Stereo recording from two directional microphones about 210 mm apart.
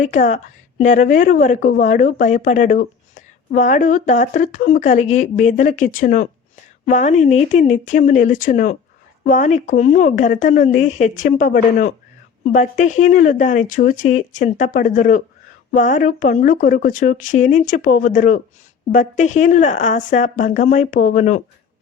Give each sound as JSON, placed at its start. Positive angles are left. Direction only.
{"t": 0.0, "sound": "a woman's voice", "side_deg": 35}